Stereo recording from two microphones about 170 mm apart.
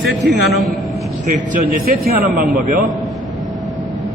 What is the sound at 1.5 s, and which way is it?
A man's voice, 55° right (ahead or behind).